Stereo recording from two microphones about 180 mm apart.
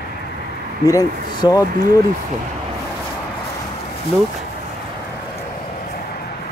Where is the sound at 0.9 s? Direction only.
20° left (ahead or behind).